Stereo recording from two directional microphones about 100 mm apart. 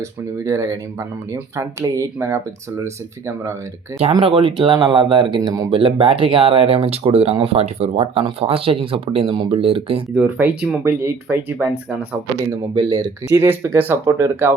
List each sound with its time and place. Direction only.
0.4 s speech: 30° right (ahead or behind)
4.2 s speech: 65° right (ahead or behind)
5.7 s speech: 65° right (ahead or behind); by 8.2 s 85° right
8.4 s speech: 70° right (ahead or behind)
10.2 s speech: 15° right (ahead or behind)
12.7 s speech: 40° right (ahead or behind)
13.3 s speech: 20° right (ahead or behind)